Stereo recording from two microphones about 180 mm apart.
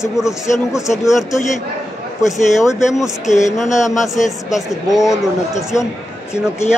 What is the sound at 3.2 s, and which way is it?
Speech, 40° left (ahead or behind).